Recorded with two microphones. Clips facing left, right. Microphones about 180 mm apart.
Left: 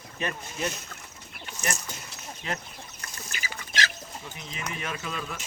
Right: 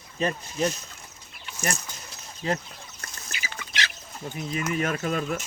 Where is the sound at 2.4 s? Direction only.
35° right (ahead or behind).